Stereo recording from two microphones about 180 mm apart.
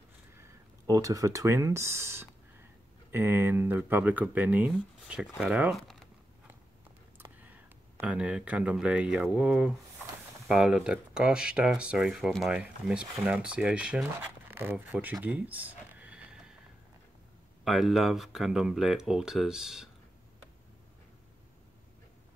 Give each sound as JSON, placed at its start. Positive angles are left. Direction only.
{"t": 0.4, "sound": "speech", "side_deg": -20}
{"t": 7.2, "sound": "speech", "side_deg": -10}
{"t": 14.5, "sound": "a sound", "side_deg": -10}
{"t": 17.6, "sound": "speech", "side_deg": 0}